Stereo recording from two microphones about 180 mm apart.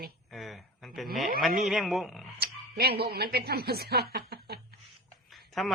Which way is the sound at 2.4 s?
60° right (ahead or behind).